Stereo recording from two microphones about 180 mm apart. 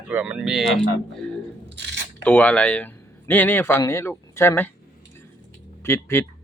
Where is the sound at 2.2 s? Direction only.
10° left (ahead or behind).